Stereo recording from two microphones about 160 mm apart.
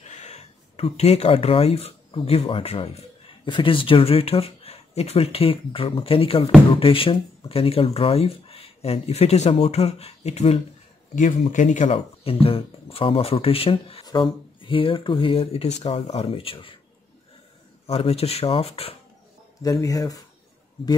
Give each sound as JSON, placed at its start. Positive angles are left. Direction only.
{"t": 0.1, "sound": "speech", "side_deg": 45}
{"t": 11.1, "sound": "speech", "side_deg": 55}
{"t": 17.8, "sound": "speech", "side_deg": 40}
{"t": 19.6, "sound": "speech", "side_deg": 20}